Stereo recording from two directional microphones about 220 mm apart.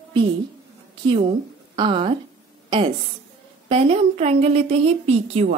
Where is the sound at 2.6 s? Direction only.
25° right (ahead or behind).